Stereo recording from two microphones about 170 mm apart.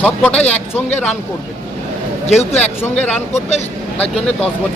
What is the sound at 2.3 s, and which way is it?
Speech, 40° left (ahead or behind).